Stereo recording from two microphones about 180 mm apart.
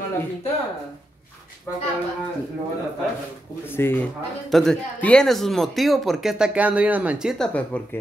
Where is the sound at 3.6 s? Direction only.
10° left (ahead or behind).